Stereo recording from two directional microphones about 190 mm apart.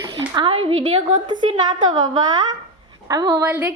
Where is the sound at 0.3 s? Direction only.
30° right (ahead or behind).